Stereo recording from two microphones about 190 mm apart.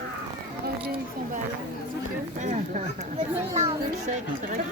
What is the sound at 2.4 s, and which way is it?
Speech, 40° right (ahead or behind).